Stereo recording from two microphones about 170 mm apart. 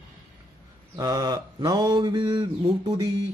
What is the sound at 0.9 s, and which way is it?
Mantra, 20° right (ahead or behind).